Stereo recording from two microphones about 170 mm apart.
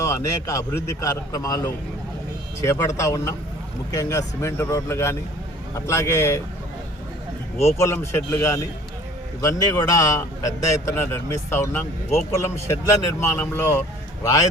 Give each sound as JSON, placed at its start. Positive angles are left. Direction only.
{"t": 0.0, "sound": "a man's voice", "side_deg": 20}
{"t": 7.6, "sound": "a man's voice", "side_deg": 15}